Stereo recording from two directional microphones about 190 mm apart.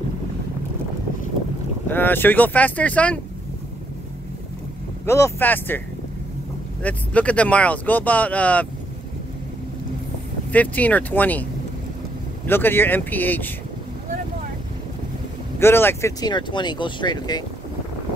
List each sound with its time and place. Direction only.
1.9 s speech: 10° left (ahead or behind)
5.0 s speech: 15° left (ahead or behind)
6.8 s speech: 5° left (ahead or behind)
10.5 s speech: 10° left (ahead or behind)
12.4 s speech: 10° left (ahead or behind)
15.6 s speech: 10° left (ahead or behind)